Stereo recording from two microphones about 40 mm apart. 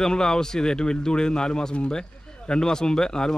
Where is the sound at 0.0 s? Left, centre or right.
Centre.